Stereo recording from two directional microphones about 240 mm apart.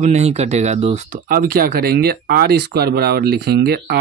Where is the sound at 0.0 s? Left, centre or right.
Right.